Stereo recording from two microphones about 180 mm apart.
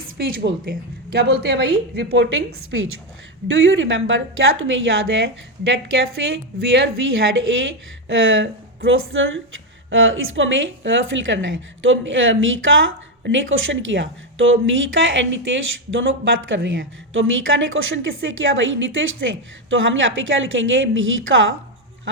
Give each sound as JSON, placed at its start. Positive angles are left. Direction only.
{"t": 0.6, "sound": "a woman's voice", "side_deg": -60}
{"t": 2.7, "sound": "a woman's voice", "side_deg": -90}
{"t": 8.0, "sound": "speech", "side_deg": -90}